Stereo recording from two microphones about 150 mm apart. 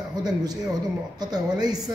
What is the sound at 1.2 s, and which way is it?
Speech, 25° right (ahead or behind).